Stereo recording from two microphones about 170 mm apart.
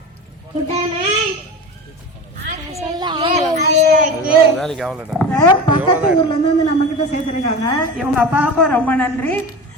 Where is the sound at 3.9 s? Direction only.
50° right (ahead or behind).